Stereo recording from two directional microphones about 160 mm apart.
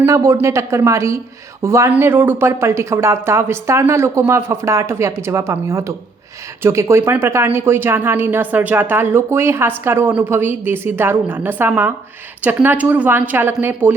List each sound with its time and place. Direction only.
0.0 s speech: 20° right (ahead or behind)